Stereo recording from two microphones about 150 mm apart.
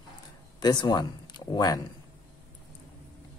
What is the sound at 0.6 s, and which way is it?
Speech, 30° left (ahead or behind).